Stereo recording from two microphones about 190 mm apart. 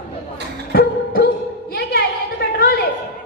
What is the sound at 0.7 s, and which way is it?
Music, 55° left (ahead or behind).